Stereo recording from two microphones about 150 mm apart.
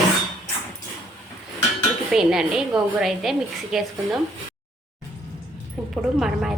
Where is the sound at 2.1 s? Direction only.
5° right (ahead or behind).